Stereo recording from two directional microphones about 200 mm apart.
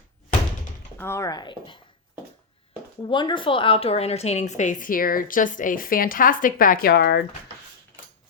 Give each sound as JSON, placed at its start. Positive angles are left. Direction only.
{"t": 0.9, "sound": "speech", "side_deg": 10}
{"t": 3.1, "sound": "a woman's voice", "side_deg": 25}